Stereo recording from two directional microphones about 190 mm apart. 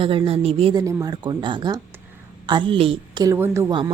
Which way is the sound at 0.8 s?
15° right (ahead or behind).